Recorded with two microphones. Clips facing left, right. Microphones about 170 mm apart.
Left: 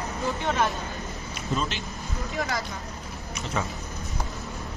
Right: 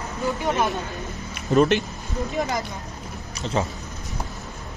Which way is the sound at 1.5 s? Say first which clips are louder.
Right 12 dB; 60° right (ahead or behind).